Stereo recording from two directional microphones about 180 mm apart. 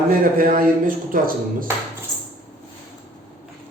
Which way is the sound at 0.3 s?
50° right (ahead or behind).